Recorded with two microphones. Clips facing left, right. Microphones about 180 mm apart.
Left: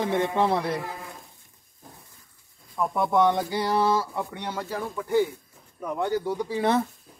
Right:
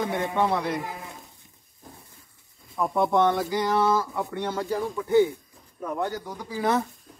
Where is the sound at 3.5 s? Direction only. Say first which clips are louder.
Right 1 dB; 30° left (ahead or behind).